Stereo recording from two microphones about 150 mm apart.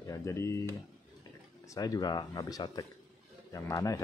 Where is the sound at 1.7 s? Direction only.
25° left (ahead or behind).